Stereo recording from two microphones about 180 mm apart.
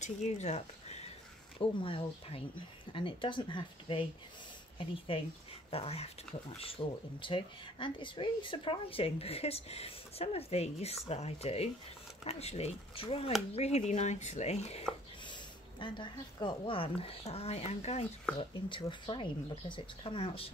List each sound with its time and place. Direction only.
0.0 s speech: 40° left (ahead or behind)
15.8 s speech: 25° left (ahead or behind)
18.4 s speech: 30° left (ahead or behind)